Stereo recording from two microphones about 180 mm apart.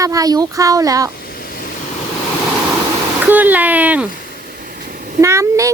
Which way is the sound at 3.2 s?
10° right (ahead or behind).